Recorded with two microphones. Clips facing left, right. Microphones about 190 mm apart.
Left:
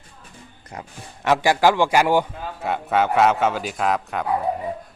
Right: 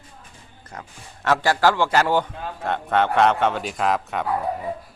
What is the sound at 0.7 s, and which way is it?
A man's voice, 15° left (ahead or behind).